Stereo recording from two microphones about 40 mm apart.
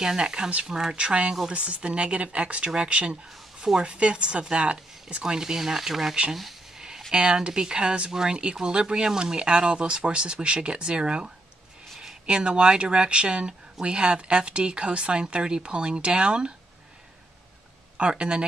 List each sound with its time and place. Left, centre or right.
0.0 s speech: centre
0.9 s speech: right
5.2 s speech: centre
7.1 s speech: right
12.3 s speech: right
17.9 s speech: right